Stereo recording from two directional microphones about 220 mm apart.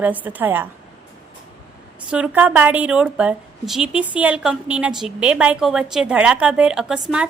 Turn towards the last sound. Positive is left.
turn(degrees=-5)  # may be behind; listen again after turning